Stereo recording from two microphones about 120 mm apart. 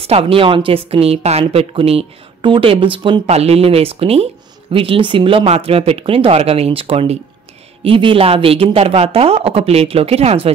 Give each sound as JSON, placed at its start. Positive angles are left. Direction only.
{"t": 0.0, "sound": "speech", "side_deg": -55}
{"t": 3.3, "sound": "speech", "side_deg": -60}